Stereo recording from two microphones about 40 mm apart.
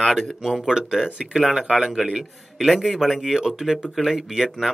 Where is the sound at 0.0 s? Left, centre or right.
Centre.